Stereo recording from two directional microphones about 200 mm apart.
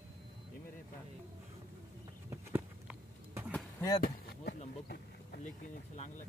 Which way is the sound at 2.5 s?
10° right (ahead or behind).